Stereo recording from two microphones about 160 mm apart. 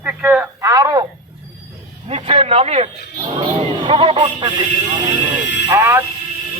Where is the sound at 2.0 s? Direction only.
35° right (ahead or behind).